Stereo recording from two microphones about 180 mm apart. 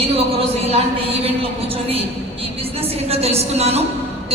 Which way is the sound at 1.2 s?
30° right (ahead or behind).